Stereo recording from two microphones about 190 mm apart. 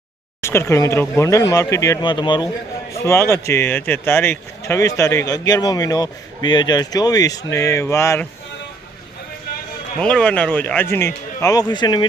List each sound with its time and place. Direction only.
0.4 s speech: 15° left (ahead or behind)
10.0 s speech: 5° left (ahead or behind); by 12.0 s 25° left (ahead or behind)